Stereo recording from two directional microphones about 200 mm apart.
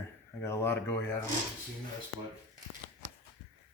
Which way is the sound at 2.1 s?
5° right (ahead or behind).